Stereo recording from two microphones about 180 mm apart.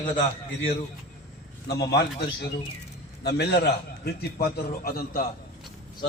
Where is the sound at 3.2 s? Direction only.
65° left (ahead or behind).